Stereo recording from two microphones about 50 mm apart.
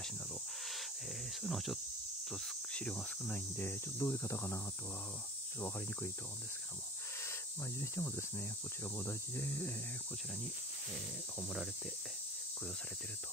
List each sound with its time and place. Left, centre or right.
1.4 s speech: centre
3.3 s speech: left
7.8 s speech: left
11.4 s speech: centre